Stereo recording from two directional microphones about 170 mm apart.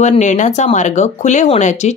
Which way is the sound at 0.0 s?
45° left (ahead or behind).